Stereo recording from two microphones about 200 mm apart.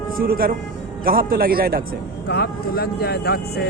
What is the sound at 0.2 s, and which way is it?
Speech, 45° right (ahead or behind).